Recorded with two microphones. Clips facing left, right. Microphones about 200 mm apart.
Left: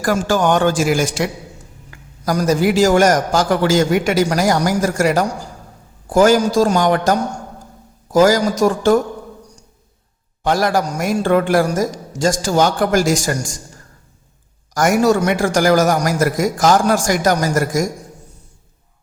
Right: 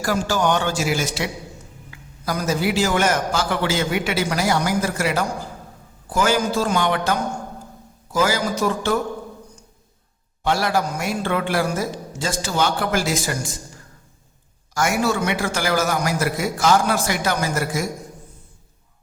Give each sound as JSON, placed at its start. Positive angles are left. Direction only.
{"t": 0.0, "sound": "a man's voice", "side_deg": 50}
{"t": 10.4, "sound": "a man's voice", "side_deg": 45}
{"t": 14.8, "sound": "a man's voice", "side_deg": 45}